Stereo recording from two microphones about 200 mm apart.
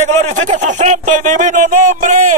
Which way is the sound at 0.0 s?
35° right (ahead or behind).